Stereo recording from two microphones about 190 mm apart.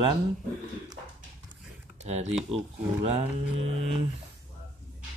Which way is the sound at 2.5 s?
35° right (ahead or behind).